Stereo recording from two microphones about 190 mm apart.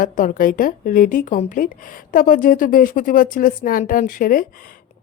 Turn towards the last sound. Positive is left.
turn(degrees=45)  # may be behind; listen again after turning